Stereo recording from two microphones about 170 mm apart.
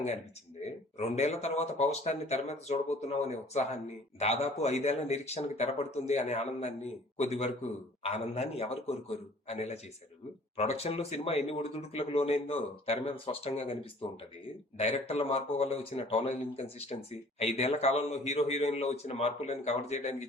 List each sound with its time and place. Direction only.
0.9 s speech: 40° left (ahead or behind)